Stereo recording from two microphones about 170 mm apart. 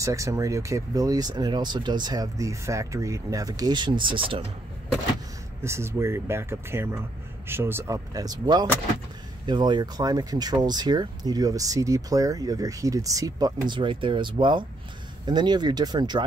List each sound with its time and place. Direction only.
0.0 s speech: 20° right (ahead or behind)
5.6 s speech: 15° right (ahead or behind)